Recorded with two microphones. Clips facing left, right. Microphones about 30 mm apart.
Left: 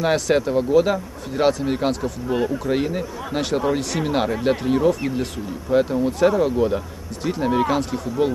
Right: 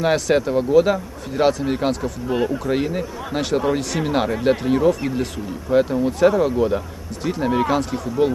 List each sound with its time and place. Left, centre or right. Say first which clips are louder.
0.0 s speech: right 1 dB; centre
2.2 s speech: right 1 dB; centre